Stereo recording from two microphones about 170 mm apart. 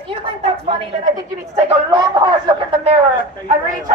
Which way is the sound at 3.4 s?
50° right (ahead or behind).